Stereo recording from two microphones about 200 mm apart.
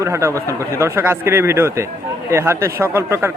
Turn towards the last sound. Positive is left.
turn(degrees=-10)  # may be behind; listen again after turning